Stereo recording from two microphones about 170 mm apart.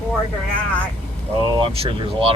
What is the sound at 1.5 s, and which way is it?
Speech, 30° right (ahead or behind).